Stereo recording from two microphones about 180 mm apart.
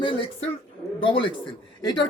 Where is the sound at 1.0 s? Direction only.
30° left (ahead or behind).